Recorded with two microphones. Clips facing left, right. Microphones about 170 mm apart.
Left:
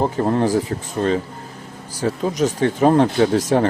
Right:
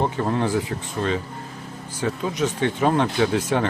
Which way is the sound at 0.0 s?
35° left (ahead or behind).